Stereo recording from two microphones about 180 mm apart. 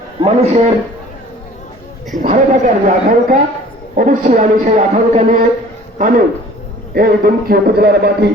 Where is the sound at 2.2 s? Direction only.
45° right (ahead or behind).